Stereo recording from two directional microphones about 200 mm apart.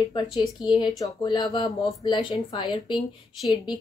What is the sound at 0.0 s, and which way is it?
Speech, 20° left (ahead or behind).